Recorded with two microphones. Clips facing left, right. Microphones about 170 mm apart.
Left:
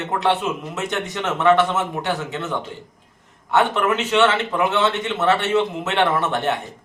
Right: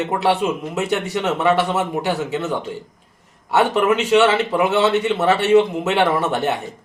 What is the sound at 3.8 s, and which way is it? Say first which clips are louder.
A man's voice: right 3 dB; 15° right (ahead or behind).